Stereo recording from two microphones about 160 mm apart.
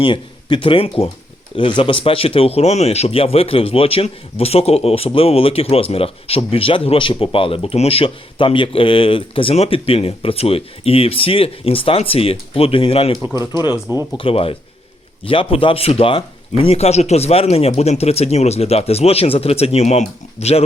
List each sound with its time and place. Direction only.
0.0 s speech: 30° left (ahead or behind)
13.3 s speech: 20° right (ahead or behind)
14.2 s speech: 35° left (ahead or behind)